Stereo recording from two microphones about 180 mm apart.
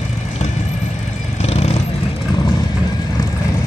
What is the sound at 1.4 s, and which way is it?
Vehicle, 35° left (ahead or behind).